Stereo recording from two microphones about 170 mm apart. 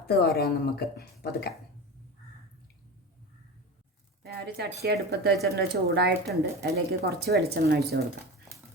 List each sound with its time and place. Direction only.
0.2 s speech: 70° left (ahead or behind)
4.2 s a woman's voice: 70° right (ahead or behind)